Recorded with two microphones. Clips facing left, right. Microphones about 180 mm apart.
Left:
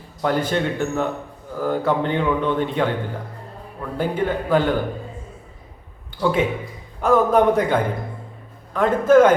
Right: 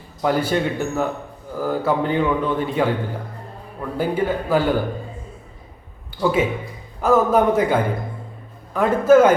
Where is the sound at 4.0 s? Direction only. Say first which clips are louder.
Right 1 dB; 5° right (ahead or behind).